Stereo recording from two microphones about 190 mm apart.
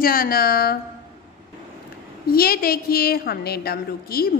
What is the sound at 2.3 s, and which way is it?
A woman's voice, 50° left (ahead or behind).